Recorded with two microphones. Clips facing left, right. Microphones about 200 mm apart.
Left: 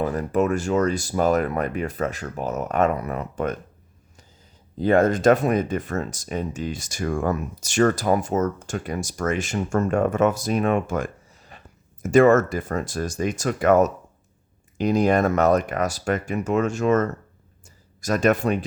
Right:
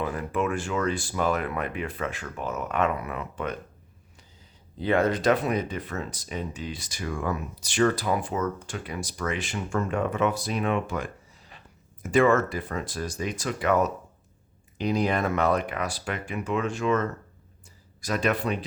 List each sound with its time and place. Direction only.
0.0 s speech: 40° left (ahead or behind)
4.8 s speech: 45° left (ahead or behind)